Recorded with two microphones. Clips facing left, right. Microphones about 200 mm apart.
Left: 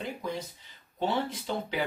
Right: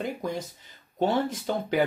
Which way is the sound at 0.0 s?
45° right (ahead or behind).